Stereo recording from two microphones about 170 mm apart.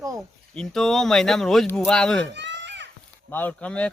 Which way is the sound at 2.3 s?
90° right.